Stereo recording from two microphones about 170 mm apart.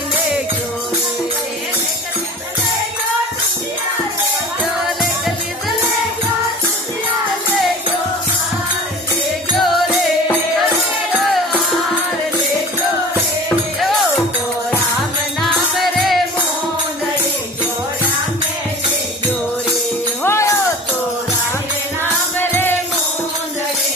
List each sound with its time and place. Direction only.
9.6 s music: centre (ahead or behind)
15.4 s music: centre (ahead or behind)
20.2 s music: 15° left (ahead or behind)
22.0 s music: 15° left (ahead or behind)